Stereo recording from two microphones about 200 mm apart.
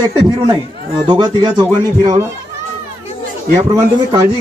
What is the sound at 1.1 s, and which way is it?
Speech, 20° right (ahead or behind).